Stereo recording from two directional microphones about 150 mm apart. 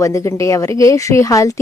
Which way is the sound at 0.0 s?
20° left (ahead or behind).